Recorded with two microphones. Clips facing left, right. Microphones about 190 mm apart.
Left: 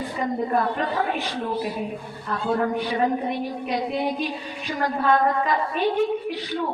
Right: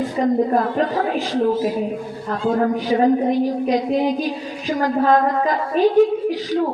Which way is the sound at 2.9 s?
40° right (ahead or behind).